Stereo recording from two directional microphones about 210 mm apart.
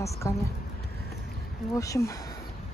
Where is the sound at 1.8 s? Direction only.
15° left (ahead or behind).